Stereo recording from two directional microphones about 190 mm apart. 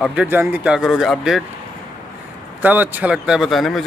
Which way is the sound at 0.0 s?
5° right (ahead or behind).